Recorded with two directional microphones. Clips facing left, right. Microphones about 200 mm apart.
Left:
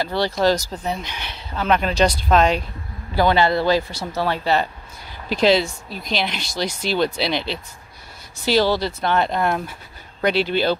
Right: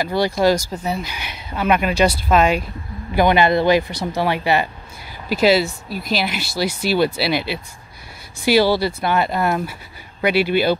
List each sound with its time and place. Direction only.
0.0 s speech: 10° right (ahead or behind)